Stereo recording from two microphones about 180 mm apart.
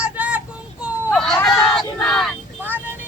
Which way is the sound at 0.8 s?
Centre (ahead or behind).